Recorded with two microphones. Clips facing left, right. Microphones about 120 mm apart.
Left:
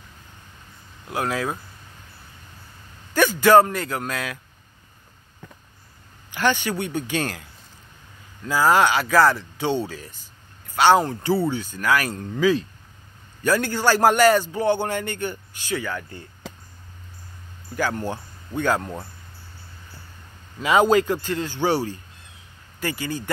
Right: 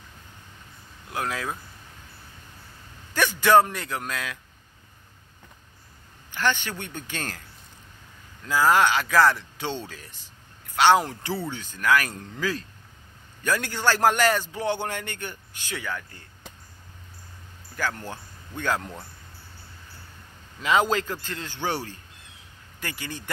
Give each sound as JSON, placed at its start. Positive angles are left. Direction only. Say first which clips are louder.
{"t": 1.1, "sound": "a man's voice", "louder": "left 5 dB", "side_deg": 5}
{"t": 3.2, "sound": "a man's voice", "louder": "left 4 dB", "side_deg": 0}
{"t": 6.3, "sound": "speech", "louder": "left 4 dB", "side_deg": 10}
{"t": 8.5, "sound": "a man's voice", "louder": "left 2 dB", "side_deg": 5}
{"t": 16.4, "sound": "a sound", "louder": "left 7 dB", "side_deg": 90}
{"t": 17.7, "sound": "speech", "louder": "left 6 dB", "side_deg": 15}
{"t": 20.9, "sound": "a man's voice", "louder": "left 8 dB", "side_deg": 10}